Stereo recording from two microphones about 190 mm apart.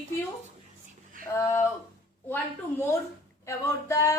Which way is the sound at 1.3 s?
15° left (ahead or behind).